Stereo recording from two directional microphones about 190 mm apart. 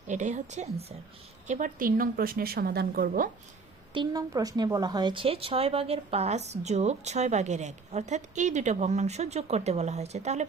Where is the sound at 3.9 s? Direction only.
20° right (ahead or behind).